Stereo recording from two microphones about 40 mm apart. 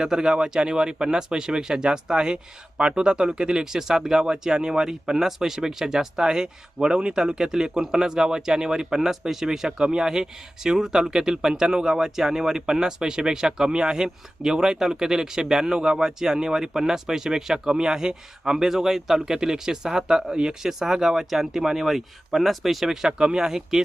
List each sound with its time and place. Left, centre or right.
0.0 s speech: centre